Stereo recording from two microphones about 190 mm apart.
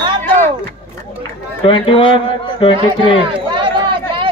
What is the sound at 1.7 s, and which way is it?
A man's voice, 25° left (ahead or behind).